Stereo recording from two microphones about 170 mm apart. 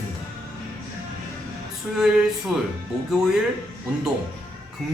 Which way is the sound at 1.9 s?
Centre (ahead or behind).